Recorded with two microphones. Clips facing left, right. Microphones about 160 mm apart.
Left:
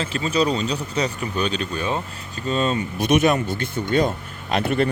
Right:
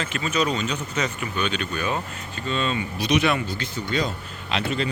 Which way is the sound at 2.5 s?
40° left (ahead or behind).